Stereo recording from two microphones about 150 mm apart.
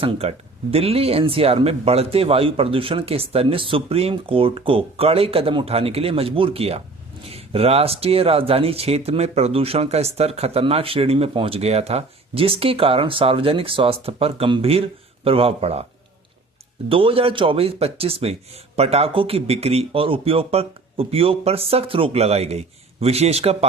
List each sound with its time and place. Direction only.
0.0 s speech: 40° right (ahead or behind)
16.9 s speech: 35° right (ahead or behind)